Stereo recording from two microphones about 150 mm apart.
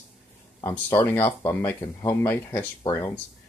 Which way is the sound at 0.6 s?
20° left (ahead or behind).